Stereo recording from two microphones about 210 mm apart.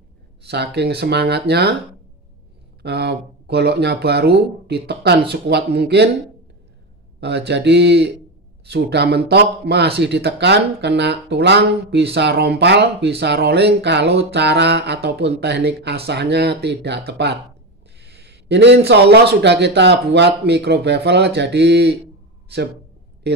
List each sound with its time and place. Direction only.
0.5 s speech: 55° right (ahead or behind)
2.8 s speech: 50° right (ahead or behind)
7.2 s speech: 55° right (ahead or behind)